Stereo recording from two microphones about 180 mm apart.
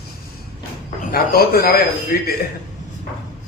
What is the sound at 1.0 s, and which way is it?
A man's voice, 55° left (ahead or behind).